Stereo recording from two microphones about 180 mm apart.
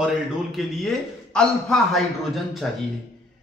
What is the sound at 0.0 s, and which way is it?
A man's voice, centre (ahead or behind).